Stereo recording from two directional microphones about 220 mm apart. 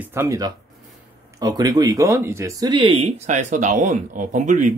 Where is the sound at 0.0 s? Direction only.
10° right (ahead or behind).